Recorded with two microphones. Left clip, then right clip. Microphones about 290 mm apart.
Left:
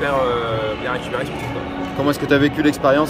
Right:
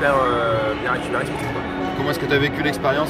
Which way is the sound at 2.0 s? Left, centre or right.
Left.